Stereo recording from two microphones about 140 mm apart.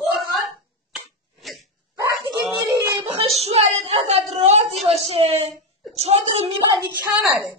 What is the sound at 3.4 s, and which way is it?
A child's voice, 45° right (ahead or behind).